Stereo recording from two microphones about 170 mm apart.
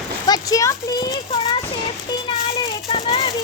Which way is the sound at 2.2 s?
30° left (ahead or behind).